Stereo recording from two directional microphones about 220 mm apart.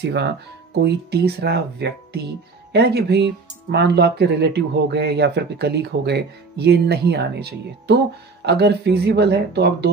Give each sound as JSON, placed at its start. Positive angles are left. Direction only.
{"t": 0.0, "sound": "speech", "side_deg": -50}